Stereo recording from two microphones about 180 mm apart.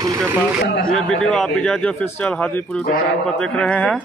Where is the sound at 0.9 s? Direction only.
5° left (ahead or behind).